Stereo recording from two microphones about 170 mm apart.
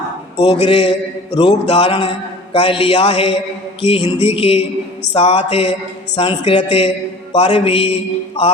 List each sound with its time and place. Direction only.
0.3 s mantra: 35° left (ahead or behind)